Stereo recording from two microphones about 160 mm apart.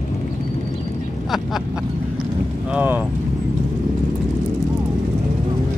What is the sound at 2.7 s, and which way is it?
Speech, 10° right (ahead or behind).